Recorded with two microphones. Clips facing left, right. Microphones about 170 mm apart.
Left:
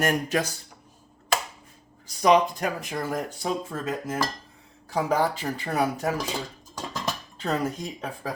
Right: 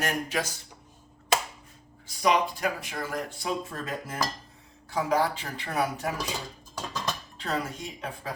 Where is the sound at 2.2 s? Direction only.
40° left (ahead or behind).